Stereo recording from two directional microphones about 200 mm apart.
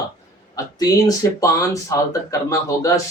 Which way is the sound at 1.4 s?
15° left (ahead or behind).